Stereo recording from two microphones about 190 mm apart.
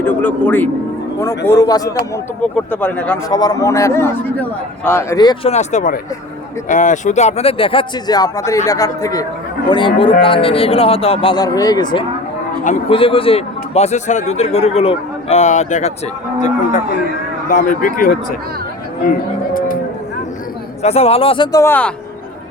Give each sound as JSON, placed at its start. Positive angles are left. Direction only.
{"t": 0.0, "sound": "a man's voice", "side_deg": 10}
{"t": 2.1, "sound": "a man's voice", "side_deg": 5}
{"t": 3.3, "sound": "a man's voice", "side_deg": 20}
{"t": 5.5, "sound": "speech", "side_deg": 40}
{"t": 17.5, "sound": "speech", "side_deg": 45}
{"t": 20.8, "sound": "speech", "side_deg": 35}